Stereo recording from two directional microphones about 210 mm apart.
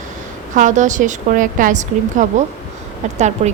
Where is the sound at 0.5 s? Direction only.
35° right (ahead or behind).